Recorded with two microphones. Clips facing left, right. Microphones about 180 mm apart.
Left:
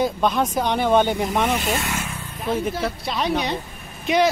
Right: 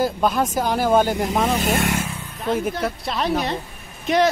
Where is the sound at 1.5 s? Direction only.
40° right (ahead or behind).